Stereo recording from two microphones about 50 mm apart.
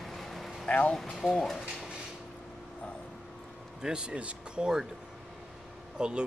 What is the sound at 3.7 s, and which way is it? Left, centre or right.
Speech, centre.